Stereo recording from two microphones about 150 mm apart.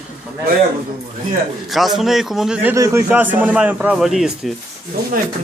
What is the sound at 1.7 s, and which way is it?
A man's voice, centre (ahead or behind).